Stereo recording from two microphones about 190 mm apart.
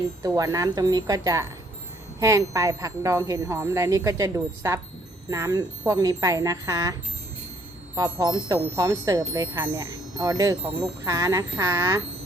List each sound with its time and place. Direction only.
0.2 s speech: 20° right (ahead or behind)
7.9 s speech: 20° right (ahead or behind)